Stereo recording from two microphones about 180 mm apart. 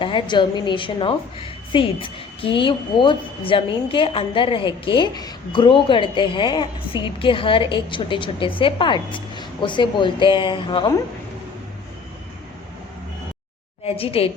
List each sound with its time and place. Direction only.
0.0 s a woman's voice: 25° left (ahead or behind)
13.8 s a woman's voice: 30° left (ahead or behind)